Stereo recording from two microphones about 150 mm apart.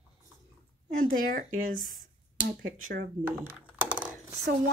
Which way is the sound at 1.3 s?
65° right (ahead or behind).